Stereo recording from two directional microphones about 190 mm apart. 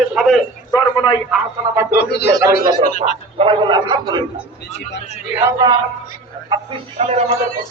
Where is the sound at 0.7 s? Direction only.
20° left (ahead or behind).